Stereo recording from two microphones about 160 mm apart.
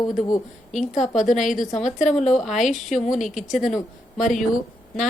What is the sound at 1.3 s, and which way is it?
Speech, 50° left (ahead or behind).